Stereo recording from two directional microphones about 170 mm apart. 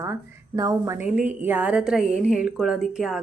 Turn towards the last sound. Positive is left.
turn(degrees=0)  # may be behind; listen again after turning